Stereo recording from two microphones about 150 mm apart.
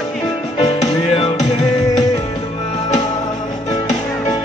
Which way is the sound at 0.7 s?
40° left (ahead or behind).